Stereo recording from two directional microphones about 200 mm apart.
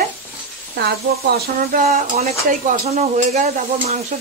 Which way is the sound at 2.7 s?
35° right (ahead or behind).